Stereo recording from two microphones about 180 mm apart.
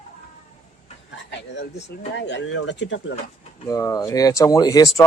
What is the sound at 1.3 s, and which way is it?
Speech, 75° left (ahead or behind).